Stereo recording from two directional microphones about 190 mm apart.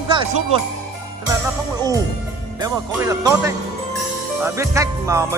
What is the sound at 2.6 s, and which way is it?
Speech, 15° right (ahead or behind).